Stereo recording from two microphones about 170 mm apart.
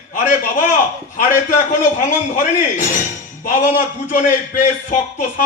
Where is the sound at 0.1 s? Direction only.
50° left (ahead or behind).